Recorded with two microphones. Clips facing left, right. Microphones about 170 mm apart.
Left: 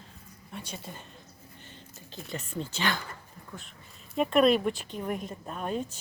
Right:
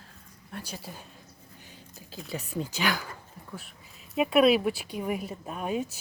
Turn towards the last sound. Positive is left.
turn(degrees=-5)  # may be behind; listen again after turning